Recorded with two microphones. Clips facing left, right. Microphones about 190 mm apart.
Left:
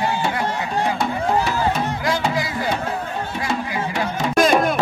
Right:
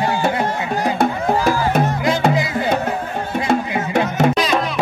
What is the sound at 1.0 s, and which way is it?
Music, 50° right (ahead or behind).